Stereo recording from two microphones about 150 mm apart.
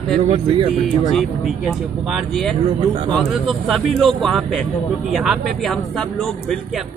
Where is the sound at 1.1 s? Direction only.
Centre (ahead or behind).